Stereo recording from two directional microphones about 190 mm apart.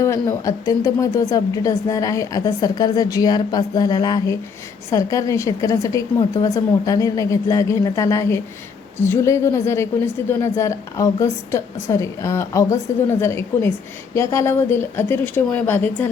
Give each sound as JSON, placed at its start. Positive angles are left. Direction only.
{"t": 0.0, "sound": "a woman's voice", "side_deg": 15}